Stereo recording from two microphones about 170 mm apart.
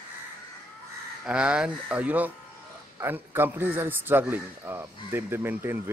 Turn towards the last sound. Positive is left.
turn(degrees=-15)  # may be behind; listen again after turning